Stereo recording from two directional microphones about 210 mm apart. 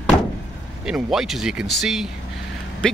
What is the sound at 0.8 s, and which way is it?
Speech, centre (ahead or behind).